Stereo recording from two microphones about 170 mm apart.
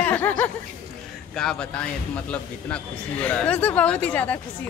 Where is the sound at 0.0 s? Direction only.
10° left (ahead or behind).